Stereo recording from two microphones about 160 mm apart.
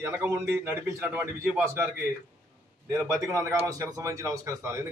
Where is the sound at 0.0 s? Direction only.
15° right (ahead or behind).